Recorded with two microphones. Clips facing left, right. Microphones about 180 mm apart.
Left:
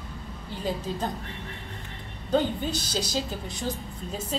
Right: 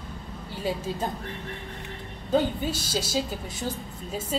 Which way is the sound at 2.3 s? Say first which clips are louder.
Right 1 dB; 5° right (ahead or behind).